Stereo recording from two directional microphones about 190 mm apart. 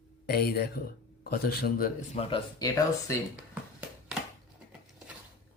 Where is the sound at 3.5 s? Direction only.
5° right (ahead or behind).